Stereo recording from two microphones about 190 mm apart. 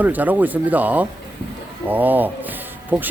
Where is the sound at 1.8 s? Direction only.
10° right (ahead or behind).